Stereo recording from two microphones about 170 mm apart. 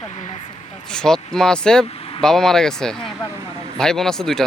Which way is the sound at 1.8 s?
35° left (ahead or behind).